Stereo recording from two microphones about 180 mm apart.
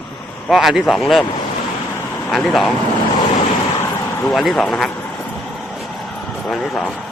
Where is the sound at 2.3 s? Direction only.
Centre (ahead or behind).